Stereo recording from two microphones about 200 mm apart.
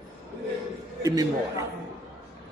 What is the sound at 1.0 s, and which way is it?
Speech, 15° right (ahead or behind).